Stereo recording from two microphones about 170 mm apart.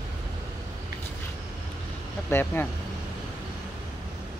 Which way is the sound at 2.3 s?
15° left (ahead or behind).